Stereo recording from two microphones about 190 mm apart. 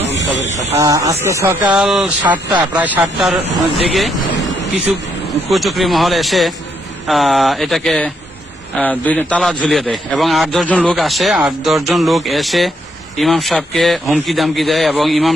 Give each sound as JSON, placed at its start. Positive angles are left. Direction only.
{"t": 0.1, "sound": "a sound", "side_deg": 70}
{"t": 0.7, "sound": "speech", "side_deg": -15}
{"t": 1.8, "sound": "a man's voice", "side_deg": 0}
{"t": 5.5, "sound": "a man's voice", "side_deg": 0}